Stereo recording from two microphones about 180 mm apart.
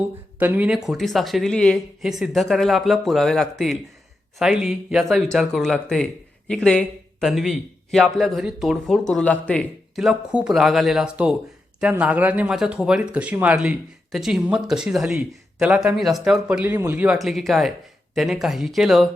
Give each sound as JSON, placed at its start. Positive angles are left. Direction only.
{"t": 0.3, "sound": "speech", "side_deg": -10}